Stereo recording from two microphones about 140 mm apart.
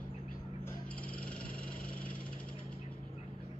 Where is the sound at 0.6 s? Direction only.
10° left (ahead or behind).